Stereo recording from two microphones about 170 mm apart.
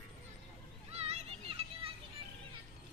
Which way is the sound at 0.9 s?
35° right (ahead or behind).